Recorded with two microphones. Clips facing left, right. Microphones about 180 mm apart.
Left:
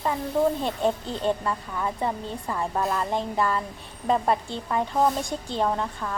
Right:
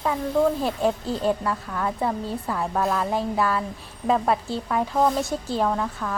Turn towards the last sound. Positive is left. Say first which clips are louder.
# right 2 dB
turn(degrees=0)  # may be behind; listen again after turning